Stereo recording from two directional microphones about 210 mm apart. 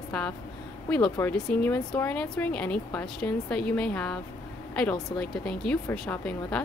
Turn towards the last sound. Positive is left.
turn(degrees=5)  # may be behind; listen again after turning